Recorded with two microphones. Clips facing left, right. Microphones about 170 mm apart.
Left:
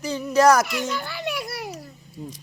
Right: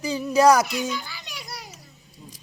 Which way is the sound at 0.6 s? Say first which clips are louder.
Left 1 dB; 60° left (ahead or behind).